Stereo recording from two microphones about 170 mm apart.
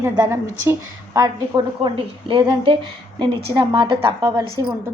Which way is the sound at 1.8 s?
30° right (ahead or behind).